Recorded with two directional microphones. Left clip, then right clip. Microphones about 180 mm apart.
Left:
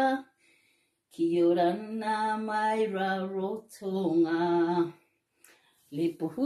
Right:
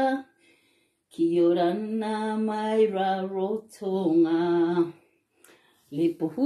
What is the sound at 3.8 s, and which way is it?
Speech, 15° left (ahead or behind).